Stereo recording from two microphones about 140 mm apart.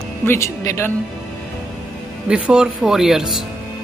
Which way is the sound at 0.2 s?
20° left (ahead or behind).